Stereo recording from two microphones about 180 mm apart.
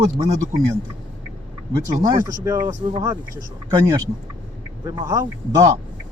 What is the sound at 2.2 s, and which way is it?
Speech, 20° right (ahead or behind).